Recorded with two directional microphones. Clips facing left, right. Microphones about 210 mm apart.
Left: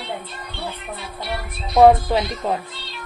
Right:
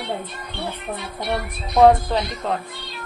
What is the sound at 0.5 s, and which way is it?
Music, 20° right (ahead or behind).